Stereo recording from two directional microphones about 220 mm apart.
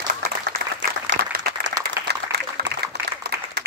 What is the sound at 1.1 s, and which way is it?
Applause, 55° right (ahead or behind).